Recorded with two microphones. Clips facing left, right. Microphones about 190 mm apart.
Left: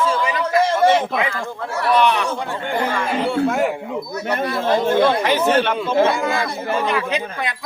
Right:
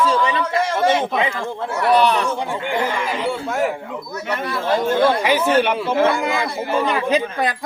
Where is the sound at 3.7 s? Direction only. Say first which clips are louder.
Left 3 dB; 15° left (ahead or behind).